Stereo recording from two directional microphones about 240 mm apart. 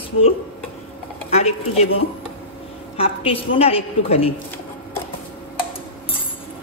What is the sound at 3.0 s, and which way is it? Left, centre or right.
A woman's voice, left.